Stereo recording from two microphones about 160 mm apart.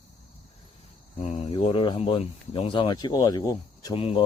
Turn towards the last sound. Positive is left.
turn(degrees=35)  # may be behind; listen again after turning